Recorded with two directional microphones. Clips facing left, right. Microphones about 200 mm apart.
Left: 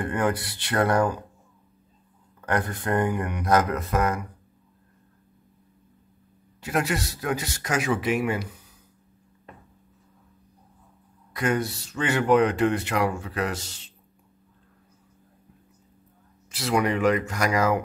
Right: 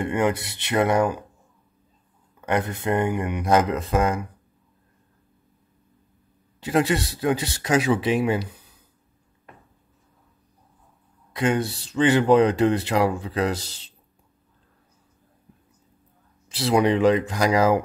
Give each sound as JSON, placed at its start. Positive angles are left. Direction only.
{"t": 0.0, "sound": "speech", "side_deg": -25}
{"t": 2.4, "sound": "speech", "side_deg": -20}
{"t": 6.6, "sound": "speech", "side_deg": -30}
{"t": 11.3, "sound": "speech", "side_deg": -30}
{"t": 16.4, "sound": "speech", "side_deg": -30}